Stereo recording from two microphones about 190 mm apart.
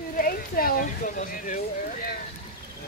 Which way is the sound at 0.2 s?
50° left (ahead or behind).